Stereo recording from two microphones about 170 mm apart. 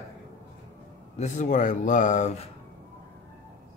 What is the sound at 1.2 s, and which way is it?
Speech, 45° left (ahead or behind).